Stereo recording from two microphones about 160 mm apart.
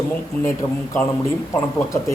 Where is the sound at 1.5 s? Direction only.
15° left (ahead or behind).